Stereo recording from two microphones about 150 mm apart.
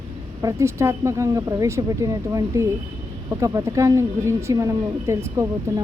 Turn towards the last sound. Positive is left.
turn(degrees=-20)  # may be behind; listen again after turning